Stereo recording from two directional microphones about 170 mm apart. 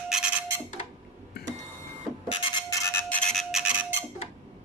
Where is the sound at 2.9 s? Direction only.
5° left (ahead or behind).